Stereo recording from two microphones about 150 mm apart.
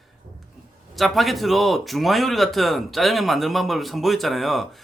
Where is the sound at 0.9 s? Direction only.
Centre (ahead or behind).